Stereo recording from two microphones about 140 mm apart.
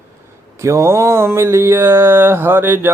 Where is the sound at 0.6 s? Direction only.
20° right (ahead or behind).